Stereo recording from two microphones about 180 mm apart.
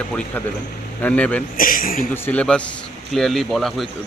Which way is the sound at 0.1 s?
5° left (ahead or behind).